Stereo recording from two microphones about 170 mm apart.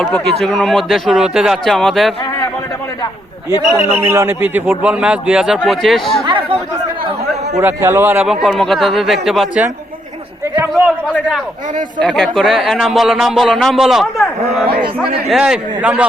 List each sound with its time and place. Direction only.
0.0 s speech: centre (ahead or behind)
4.0 s a man's voice: 15° right (ahead or behind)
6.2 s chatter: 30° right (ahead or behind)
7.6 s speech: 15° right (ahead or behind)
10.5 s a man's voice: 15° right (ahead or behind)
11.9 s speech: 5° left (ahead or behind)
15.3 s speech: 5° right (ahead or behind)